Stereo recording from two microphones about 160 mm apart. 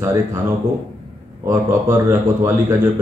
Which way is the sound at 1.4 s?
20° right (ahead or behind).